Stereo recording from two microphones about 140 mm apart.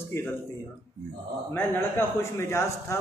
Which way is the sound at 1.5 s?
15° left (ahead or behind).